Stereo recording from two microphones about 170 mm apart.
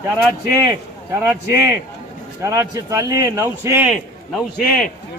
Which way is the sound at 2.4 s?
20° right (ahead or behind).